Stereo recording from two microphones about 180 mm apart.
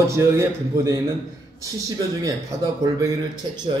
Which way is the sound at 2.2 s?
20° right (ahead or behind).